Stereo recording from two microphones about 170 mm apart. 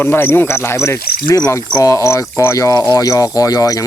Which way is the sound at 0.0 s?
15° left (ahead or behind).